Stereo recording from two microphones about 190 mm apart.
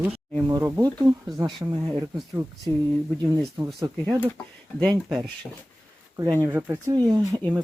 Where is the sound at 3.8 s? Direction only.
20° right (ahead or behind).